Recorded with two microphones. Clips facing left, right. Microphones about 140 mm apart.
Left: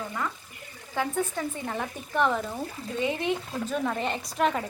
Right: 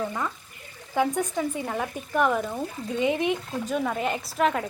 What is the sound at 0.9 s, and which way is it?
Speech, 15° right (ahead or behind).